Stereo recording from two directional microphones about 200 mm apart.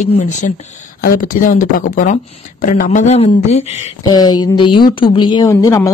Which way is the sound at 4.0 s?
20° left (ahead or behind).